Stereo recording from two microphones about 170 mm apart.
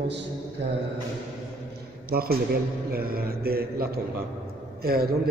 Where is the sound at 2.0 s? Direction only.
60° right (ahead or behind).